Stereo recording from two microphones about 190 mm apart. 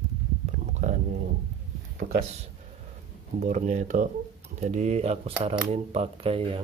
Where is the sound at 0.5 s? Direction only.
40° right (ahead or behind).